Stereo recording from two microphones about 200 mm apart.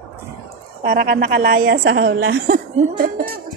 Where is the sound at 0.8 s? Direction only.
45° right (ahead or behind).